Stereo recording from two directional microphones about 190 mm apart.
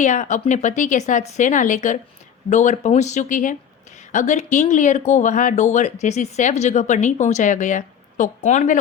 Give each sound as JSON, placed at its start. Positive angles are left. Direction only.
{"t": 0.0, "sound": "speech", "side_deg": 40}